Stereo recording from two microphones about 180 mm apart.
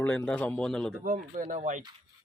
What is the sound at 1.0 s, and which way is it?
Speech, 45° right (ahead or behind).